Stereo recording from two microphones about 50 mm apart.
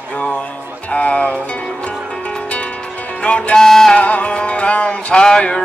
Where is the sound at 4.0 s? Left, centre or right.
Left.